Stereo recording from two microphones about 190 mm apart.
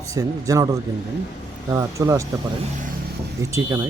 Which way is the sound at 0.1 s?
15° right (ahead or behind).